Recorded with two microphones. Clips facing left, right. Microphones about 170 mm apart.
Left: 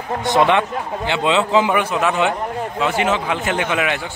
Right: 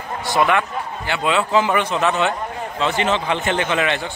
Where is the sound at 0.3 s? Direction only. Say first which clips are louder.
Left 3 dB; 20° left (ahead or behind).